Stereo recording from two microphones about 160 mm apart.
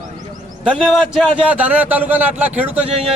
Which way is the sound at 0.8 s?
Centre (ahead or behind).